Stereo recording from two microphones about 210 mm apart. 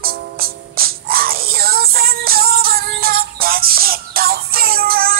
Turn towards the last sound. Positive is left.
turn(degrees=-45)  # may be behind; listen again after turning